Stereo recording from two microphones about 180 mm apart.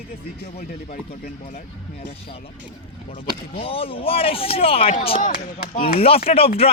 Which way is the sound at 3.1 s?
30° left (ahead or behind).